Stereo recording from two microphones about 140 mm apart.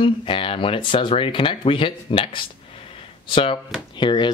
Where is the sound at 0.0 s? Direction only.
40° left (ahead or behind).